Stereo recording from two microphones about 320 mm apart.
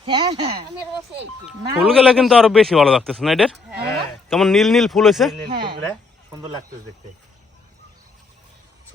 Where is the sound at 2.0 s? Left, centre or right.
Centre.